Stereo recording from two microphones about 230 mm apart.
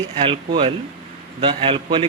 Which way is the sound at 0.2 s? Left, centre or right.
Right.